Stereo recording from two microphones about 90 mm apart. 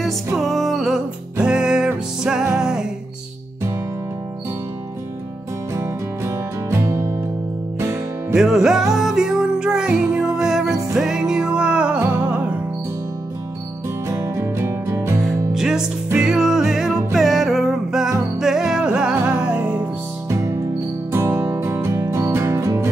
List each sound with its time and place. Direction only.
0.4 s music: centre (ahead or behind)
5.8 s music: 30° right (ahead or behind)
7.8 s music: 35° right (ahead or behind)
8.4 s music: 5° right (ahead or behind)
14.0 s music: 30° right (ahead or behind)
15.2 s music: 5° right (ahead or behind)
20.2 s music: 30° right (ahead or behind)